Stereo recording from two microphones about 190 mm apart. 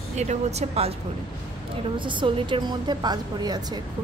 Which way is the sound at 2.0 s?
25° right (ahead or behind).